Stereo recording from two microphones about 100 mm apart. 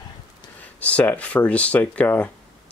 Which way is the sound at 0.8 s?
15° left (ahead or behind).